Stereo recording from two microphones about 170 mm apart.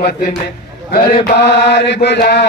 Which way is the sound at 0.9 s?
80° left.